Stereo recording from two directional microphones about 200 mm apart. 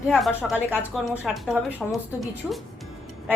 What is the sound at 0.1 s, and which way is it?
A woman's voice, centre (ahead or behind).